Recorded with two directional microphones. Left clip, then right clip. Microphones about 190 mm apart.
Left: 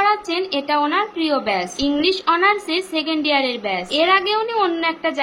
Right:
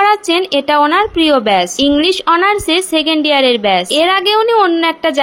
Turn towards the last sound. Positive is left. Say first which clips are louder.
# right 7 dB
turn(degrees=-40)  # may be behind; listen again after turning